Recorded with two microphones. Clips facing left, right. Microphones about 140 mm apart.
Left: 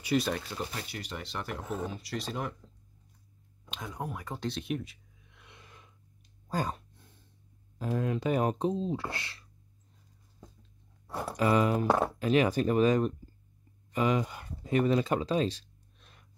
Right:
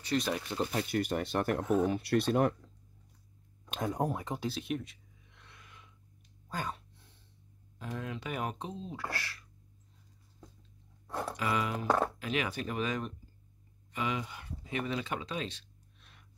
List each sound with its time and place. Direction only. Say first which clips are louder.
0.0 s speech: left 3 dB; 5° left (ahead or behind)
0.7 s speech: right 8 dB; 50° right (ahead or behind)
3.7 s speech: right 6 dB; 45° right (ahead or behind)
4.1 s speech: right 3 dB; 20° right (ahead or behind)
4.4 s a sound: left 1 dB; centre (ahead or behind)
6.5 s a sound: left 5 dB; 40° left (ahead or behind)
7.8 s speech: left 9 dB; 40° left (ahead or behind); by 9.4 s 25° left (ahead or behind)
11.1 s speech: left 1 dB; 10° left (ahead or behind)
11.3 s speech: left 9 dB; 40° left (ahead or behind)